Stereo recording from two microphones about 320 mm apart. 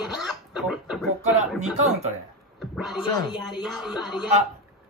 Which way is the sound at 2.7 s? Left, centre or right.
Centre.